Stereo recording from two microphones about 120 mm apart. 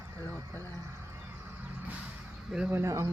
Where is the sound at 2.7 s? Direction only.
25° right (ahead or behind).